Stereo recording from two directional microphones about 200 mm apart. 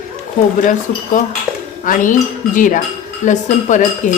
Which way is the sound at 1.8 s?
40° left (ahead or behind).